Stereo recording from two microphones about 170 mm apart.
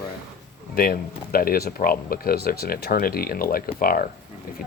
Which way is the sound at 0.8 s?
60° left (ahead or behind).